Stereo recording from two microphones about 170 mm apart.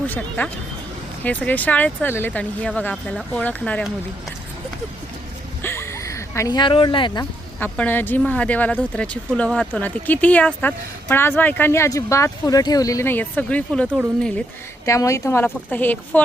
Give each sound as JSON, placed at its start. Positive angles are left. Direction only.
{"t": 0.1, "sound": "speech", "side_deg": 10}
{"t": 5.6, "sound": "a sound", "side_deg": 15}
{"t": 7.6, "sound": "speech", "side_deg": 10}
{"t": 14.8, "sound": "speech", "side_deg": 20}